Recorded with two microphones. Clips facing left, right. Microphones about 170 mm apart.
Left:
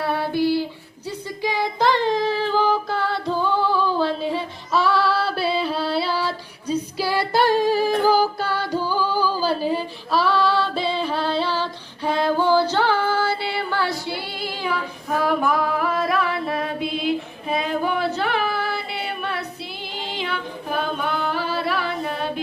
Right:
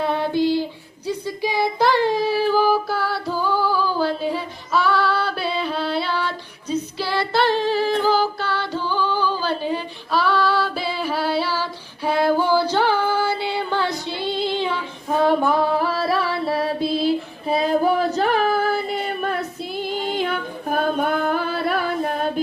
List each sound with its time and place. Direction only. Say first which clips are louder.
0.0 s child singing: right 1 dB; 20° right (ahead or behind); by 4.0 s 5° right (ahead or behind)
4.2 s a sound: even; centre (ahead or behind)
4.9 s music: left 1 dB; centre (ahead or behind)
6.7 s a capella: left 1 dB; 10° left (ahead or behind)
8.9 s female singing: right 2 dB; 10° left (ahead or behind); by 19.5 s 45° right (ahead or behind)
19.9 s singing: right 5 dB; 45° right (ahead or behind)